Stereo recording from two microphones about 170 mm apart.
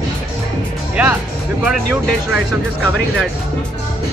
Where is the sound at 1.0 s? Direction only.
5° right (ahead or behind).